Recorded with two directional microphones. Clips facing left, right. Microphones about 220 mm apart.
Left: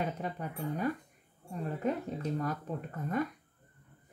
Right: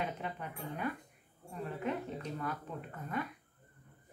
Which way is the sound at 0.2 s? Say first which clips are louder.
Left 5 dB; 40° left (ahead or behind).